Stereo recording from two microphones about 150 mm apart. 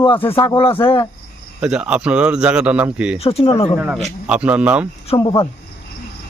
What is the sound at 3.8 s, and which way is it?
Speech, 5° right (ahead or behind).